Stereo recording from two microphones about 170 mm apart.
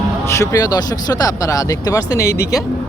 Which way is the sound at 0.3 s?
20° left (ahead or behind).